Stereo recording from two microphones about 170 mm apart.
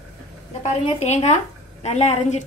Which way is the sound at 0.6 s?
40° left (ahead or behind).